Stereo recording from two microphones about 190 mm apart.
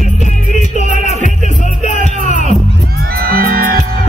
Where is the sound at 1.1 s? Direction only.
40° right (ahead or behind).